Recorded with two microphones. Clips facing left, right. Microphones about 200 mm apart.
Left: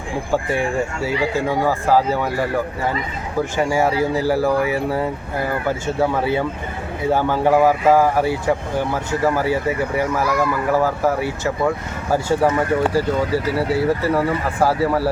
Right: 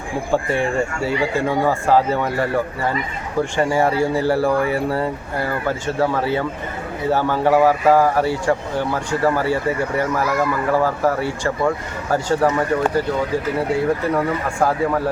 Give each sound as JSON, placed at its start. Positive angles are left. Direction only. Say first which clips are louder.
{"t": 1.5, "sound": "speech", "louder": "right 1 dB", "side_deg": 5}
{"t": 3.6, "sound": "speech", "louder": "even", "side_deg": 5}